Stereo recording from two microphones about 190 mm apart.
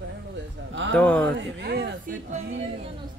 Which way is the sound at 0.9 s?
5° left (ahead or behind).